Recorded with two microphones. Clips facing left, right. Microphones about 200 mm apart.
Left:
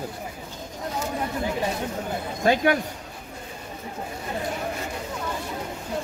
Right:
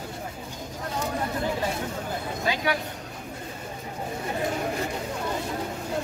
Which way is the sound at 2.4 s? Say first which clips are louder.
Left 8 dB; 50° left (ahead or behind).